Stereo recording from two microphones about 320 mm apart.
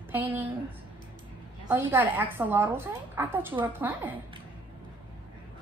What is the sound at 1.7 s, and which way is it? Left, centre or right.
A woman's voice, centre.